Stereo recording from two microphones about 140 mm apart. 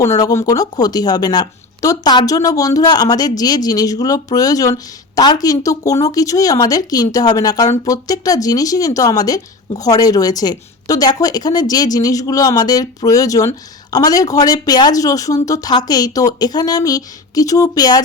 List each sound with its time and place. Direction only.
0.0 s a woman's voice: 25° left (ahead or behind)